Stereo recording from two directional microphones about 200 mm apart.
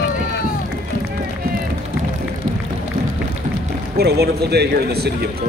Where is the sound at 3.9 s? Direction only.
50° right (ahead or behind).